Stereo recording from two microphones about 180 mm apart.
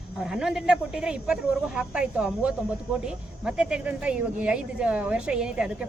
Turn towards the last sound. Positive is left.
turn(degrees=-5)  # may be behind; listen again after turning